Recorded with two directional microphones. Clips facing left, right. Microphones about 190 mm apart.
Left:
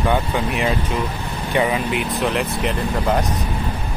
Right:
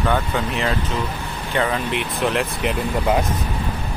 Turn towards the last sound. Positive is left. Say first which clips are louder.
# even
turn(degrees=0)  # may be behind; listen again after turning